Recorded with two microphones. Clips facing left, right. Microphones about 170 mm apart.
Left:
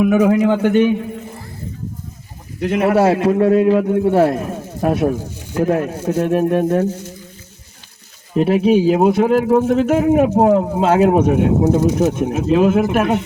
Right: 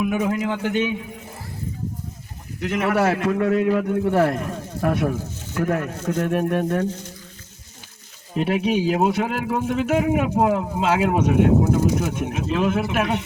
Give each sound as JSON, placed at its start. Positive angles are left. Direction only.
{"t": 0.0, "sound": "a man's voice", "side_deg": 55}
{"t": 2.6, "sound": "a man's voice", "side_deg": 35}
{"t": 8.4, "sound": "speech", "side_deg": 40}